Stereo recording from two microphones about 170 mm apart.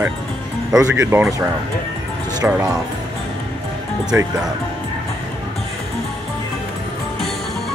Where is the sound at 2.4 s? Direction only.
5° right (ahead or behind).